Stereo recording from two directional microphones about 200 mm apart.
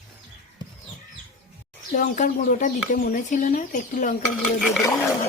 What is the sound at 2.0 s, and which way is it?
Speech, 40° left (ahead or behind).